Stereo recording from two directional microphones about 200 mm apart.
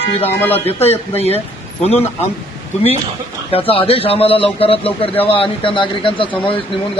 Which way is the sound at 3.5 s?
30° left (ahead or behind).